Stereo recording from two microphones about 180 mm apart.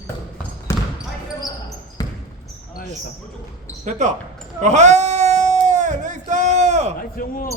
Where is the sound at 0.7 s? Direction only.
15° left (ahead or behind).